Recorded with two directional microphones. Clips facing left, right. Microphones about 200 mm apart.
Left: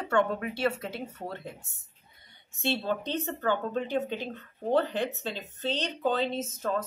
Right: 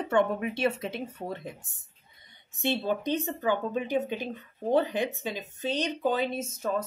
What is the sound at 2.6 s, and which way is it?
Speech, 15° right (ahead or behind).